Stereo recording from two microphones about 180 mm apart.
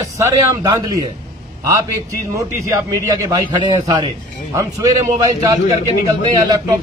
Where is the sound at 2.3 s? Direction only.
20° right (ahead or behind).